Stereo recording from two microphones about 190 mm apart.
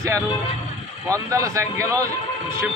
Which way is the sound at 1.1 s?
15° right (ahead or behind).